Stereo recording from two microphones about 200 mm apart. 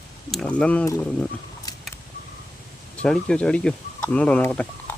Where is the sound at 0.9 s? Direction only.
15° left (ahead or behind).